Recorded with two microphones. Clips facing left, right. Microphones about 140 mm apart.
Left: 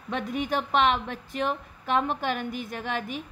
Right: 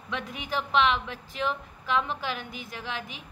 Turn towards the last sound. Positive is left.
turn(degrees=50)  # may be behind; listen again after turning